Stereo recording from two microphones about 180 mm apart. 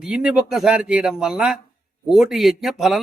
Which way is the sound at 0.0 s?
5° right (ahead or behind).